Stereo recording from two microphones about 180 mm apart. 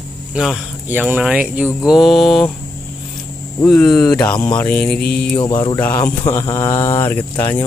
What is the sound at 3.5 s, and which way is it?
Speech, 20° left (ahead or behind).